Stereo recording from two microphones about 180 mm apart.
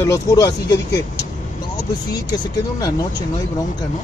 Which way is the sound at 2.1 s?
20° left (ahead or behind).